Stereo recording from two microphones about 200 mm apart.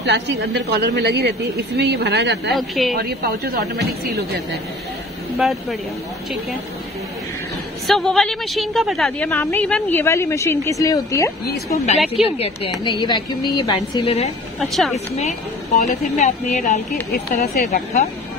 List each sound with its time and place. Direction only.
0.0 s a woman's voice: 60° right (ahead or behind)
2.5 s a woman's voice: centre (ahead or behind)
2.9 s speech: 50° right (ahead or behind)
5.4 s a woman's voice: centre (ahead or behind)
7.8 s a woman's voice: centre (ahead or behind)
11.4 s speech: 50° left (ahead or behind)
12.1 s a woman's voice: 30° left (ahead or behind)
14.6 s a woman's voice: centre (ahead or behind)
15.8 s speech: 35° left (ahead or behind)
17.1 s speech: 50° left (ahead or behind)